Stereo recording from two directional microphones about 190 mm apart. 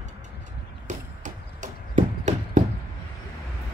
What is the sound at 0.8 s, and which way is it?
Chop, 40° right (ahead or behind).